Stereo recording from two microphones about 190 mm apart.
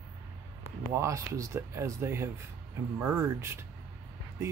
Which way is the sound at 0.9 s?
15° right (ahead or behind).